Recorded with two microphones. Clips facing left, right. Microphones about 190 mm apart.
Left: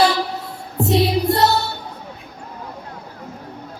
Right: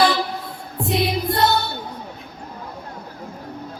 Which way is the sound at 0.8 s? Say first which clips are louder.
Left 5 dB; 35° left (ahead or behind).